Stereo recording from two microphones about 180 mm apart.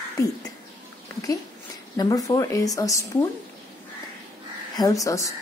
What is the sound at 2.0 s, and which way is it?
A woman's voice, 20° left (ahead or behind).